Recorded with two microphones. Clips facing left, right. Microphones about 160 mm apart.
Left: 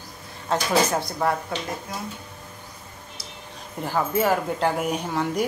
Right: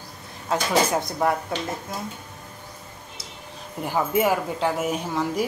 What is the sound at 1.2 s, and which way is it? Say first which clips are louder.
Speech: right 1 dB; 15° right (ahead or behind).